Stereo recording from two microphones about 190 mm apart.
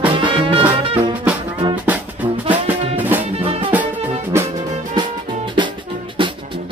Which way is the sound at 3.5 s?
30° right (ahead or behind).